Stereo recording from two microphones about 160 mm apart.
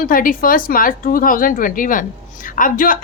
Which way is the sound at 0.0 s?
60° left (ahead or behind).